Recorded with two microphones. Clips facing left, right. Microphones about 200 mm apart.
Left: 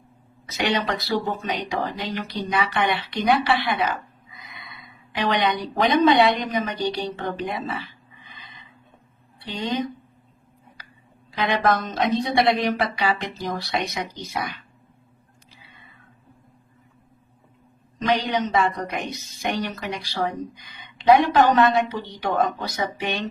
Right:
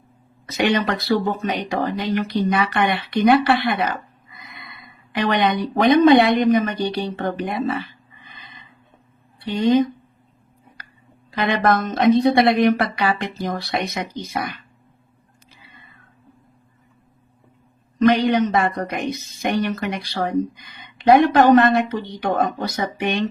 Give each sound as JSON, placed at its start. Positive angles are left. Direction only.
{"t": 0.5, "sound": "speech", "side_deg": -55}
{"t": 5.1, "sound": "speech", "side_deg": -55}
{"t": 9.6, "sound": "speech", "side_deg": -50}
{"t": 11.3, "sound": "speech", "side_deg": -55}
{"t": 18.0, "sound": "speech", "side_deg": -55}